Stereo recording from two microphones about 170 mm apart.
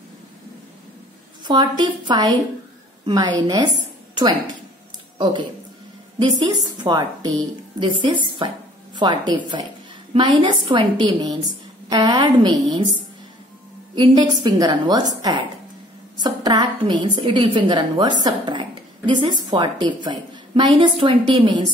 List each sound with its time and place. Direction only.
1.4 s a woman's voice: 25° right (ahead or behind)
4.1 s a sound: 25° right (ahead or behind)
6.1 s a woman's voice: 25° right (ahead or behind)
13.9 s a woman's voice: 25° right (ahead or behind)